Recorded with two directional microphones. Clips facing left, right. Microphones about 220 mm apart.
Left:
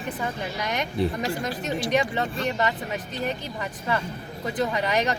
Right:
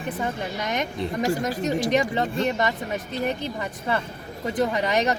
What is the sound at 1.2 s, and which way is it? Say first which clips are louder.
Speech: right 4 dB; 40° right (ahead or behind).